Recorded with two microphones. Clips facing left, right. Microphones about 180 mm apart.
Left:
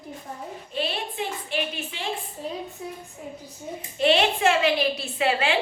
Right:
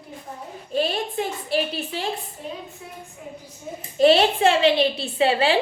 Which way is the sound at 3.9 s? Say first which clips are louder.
Right 5 dB; 40° right (ahead or behind).